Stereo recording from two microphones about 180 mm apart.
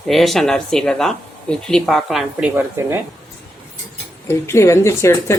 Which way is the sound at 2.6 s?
10° right (ahead or behind).